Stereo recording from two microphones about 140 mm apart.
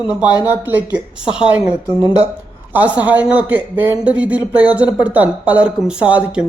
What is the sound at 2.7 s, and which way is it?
Speech, 10° right (ahead or behind).